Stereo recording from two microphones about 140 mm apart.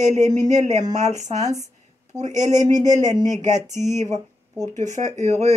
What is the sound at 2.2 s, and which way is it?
Speech, 60° right (ahead or behind).